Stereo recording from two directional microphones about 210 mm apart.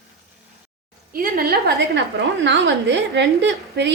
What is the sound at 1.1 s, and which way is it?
A woman's voice, 45° right (ahead or behind).